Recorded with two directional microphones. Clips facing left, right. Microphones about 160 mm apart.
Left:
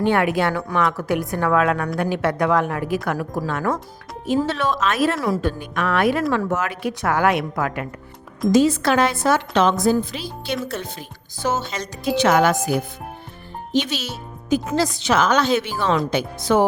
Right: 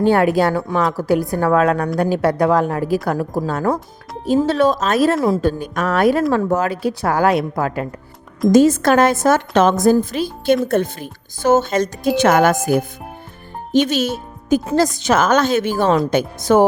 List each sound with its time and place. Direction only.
0.0 s speech: 35° right (ahead or behind)
8.5 s a woman's voice: 45° right (ahead or behind)